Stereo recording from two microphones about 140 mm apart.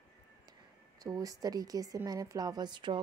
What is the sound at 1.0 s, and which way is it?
A woman's voice, 25° right (ahead or behind).